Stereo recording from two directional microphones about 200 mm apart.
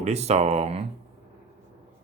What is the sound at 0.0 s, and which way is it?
Speech, 30° right (ahead or behind).